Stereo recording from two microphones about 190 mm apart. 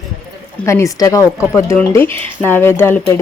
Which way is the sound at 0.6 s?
15° left (ahead or behind).